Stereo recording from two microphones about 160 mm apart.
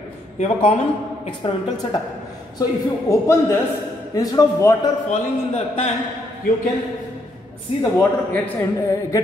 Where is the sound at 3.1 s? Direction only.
20° left (ahead or behind).